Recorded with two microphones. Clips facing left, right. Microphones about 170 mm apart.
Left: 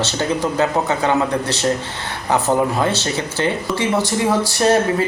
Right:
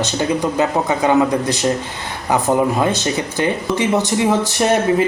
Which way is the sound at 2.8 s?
15° right (ahead or behind).